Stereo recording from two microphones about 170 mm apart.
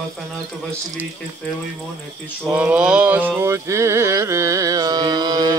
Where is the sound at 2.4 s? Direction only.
5° right (ahead or behind); by 5.5 s 25° right (ahead or behind).